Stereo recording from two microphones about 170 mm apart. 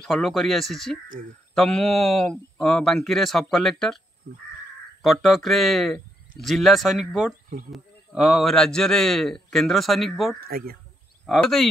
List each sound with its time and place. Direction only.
0.0 s a man's voice: centre (ahead or behind)
5.0 s a man's voice: centre (ahead or behind)
10.4 s speech: 65° right (ahead or behind)
11.2 s a man's voice: centre (ahead or behind)